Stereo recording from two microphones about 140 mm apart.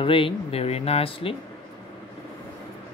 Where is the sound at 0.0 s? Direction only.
40° left (ahead or behind).